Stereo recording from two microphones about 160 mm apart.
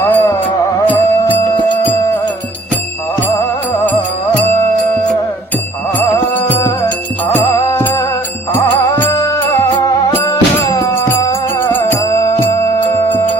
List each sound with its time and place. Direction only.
0.0 s music: 15° left (ahead or behind)
6.0 s music: 10° left (ahead or behind)